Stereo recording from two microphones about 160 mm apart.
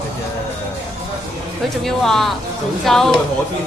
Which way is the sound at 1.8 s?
Centre (ahead or behind).